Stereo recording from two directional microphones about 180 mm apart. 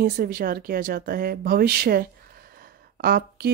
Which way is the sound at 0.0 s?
55° right (ahead or behind).